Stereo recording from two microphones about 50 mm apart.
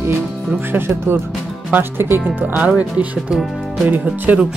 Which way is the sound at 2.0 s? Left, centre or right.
Right.